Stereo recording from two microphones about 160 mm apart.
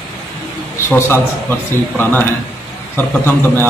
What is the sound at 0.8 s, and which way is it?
A man's voice, 15° left (ahead or behind).